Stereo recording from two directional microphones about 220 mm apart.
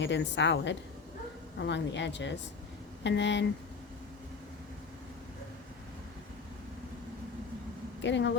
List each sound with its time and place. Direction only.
0.0 s a woman's voice: 55° left (ahead or behind)
8.0 s speech: 55° left (ahead or behind)